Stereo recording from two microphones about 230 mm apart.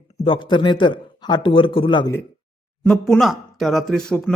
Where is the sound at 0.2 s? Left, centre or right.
Left.